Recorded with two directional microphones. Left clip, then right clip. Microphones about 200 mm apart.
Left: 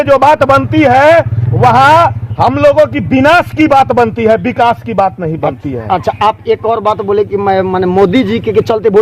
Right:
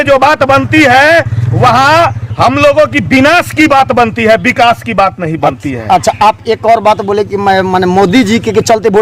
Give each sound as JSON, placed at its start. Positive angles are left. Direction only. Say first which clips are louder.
{"t": 0.0, "sound": "a man's voice", "louder": "even", "side_deg": -10}
{"t": 5.4, "sound": "speech", "louder": "right 5 dB", "side_deg": -65}